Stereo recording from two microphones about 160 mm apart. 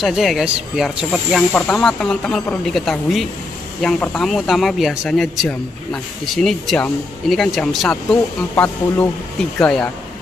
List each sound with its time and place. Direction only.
0.0 s speech: centre (ahead or behind)